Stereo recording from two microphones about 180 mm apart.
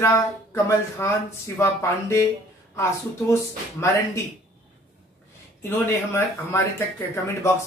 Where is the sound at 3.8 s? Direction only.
15° left (ahead or behind).